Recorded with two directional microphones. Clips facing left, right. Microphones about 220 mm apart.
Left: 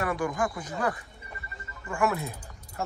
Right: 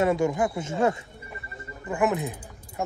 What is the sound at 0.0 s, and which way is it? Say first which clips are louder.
A man's voice: right 6 dB; 25° right (ahead or behind).